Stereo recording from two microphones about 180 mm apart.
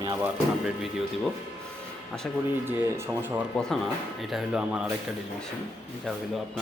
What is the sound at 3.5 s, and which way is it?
Speech, centre (ahead or behind).